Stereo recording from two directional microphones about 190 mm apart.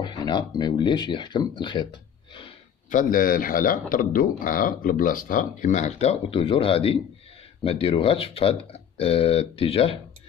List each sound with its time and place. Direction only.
0.0 s speech: 20° left (ahead or behind)
2.9 s a man's voice: 45° left (ahead or behind); by 9.9 s 30° left (ahead or behind)